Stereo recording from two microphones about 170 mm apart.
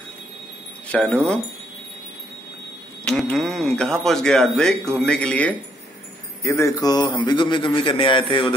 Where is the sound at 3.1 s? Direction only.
Centre (ahead or behind).